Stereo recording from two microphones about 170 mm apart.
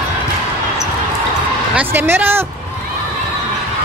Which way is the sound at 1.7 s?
10° right (ahead or behind).